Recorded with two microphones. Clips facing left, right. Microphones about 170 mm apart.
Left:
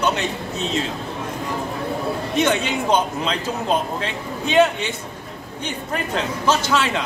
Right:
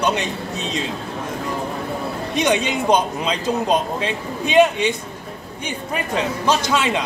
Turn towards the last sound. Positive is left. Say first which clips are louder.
# right 1 dB
turn(degrees=-15)  # may be behind; listen again after turning